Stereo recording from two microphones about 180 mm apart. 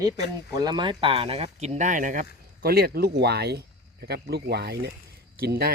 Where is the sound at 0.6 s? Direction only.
25° right (ahead or behind).